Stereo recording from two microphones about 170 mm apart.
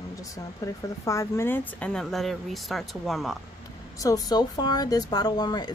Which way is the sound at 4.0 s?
20° left (ahead or behind).